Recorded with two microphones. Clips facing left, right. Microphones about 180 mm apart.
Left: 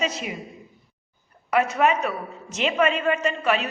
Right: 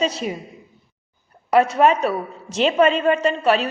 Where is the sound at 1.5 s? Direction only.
30° right (ahead or behind).